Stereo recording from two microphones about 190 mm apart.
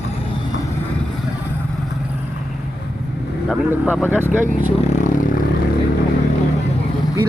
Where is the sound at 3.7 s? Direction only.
10° right (ahead or behind).